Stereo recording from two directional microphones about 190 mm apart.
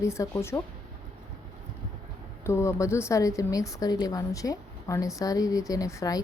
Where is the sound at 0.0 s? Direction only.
15° left (ahead or behind).